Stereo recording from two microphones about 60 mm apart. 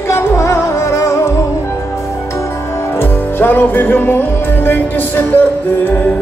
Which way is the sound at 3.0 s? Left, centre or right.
Left.